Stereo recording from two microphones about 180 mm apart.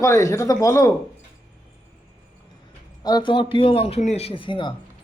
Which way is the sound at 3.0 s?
25° left (ahead or behind).